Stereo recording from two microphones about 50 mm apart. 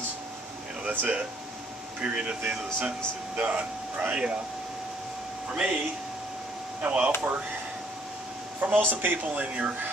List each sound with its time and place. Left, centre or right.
0.8 s speech: right
5.5 s speech: right
6.8 s speech: right
8.5 s speech: right
9.2 s speech: right